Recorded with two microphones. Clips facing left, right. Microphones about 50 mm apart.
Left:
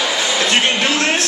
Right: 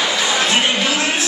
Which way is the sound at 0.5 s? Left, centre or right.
Left.